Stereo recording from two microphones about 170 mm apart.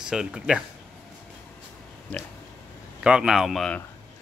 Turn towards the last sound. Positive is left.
turn(degrees=0)  # may be behind; listen again after turning